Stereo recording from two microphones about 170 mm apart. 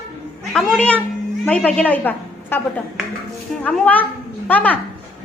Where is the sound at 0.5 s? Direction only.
5° left (ahead or behind).